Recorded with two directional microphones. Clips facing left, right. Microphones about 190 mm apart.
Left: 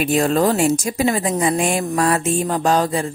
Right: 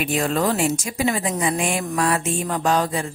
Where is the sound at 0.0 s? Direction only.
35° left (ahead or behind).